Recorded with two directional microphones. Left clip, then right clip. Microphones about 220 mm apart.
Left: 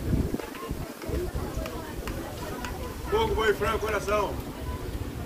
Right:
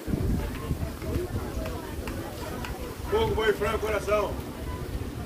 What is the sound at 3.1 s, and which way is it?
A man's voice, 50° left (ahead or behind).